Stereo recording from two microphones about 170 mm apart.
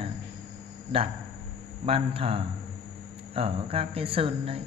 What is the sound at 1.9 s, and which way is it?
Speech, 35° right (ahead or behind).